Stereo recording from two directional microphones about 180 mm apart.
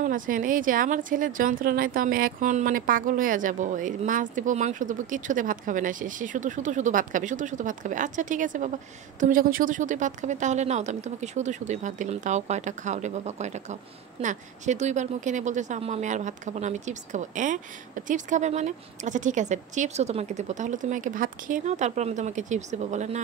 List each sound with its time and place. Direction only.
0.0 s a woman's voice: 50° right (ahead or behind)